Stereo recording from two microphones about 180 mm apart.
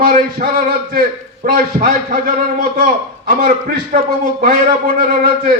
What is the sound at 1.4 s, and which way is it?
A man's voice, 50° right (ahead or behind).